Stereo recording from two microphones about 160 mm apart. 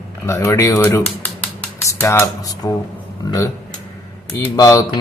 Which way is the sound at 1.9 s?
15° left (ahead or behind).